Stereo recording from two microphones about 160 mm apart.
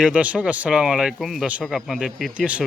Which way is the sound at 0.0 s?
10° right (ahead or behind).